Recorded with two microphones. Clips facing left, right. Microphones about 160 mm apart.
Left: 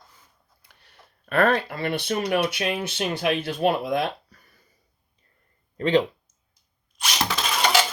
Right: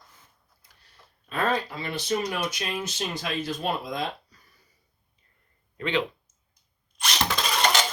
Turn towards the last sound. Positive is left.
turn(degrees=5)  # may be behind; listen again after turning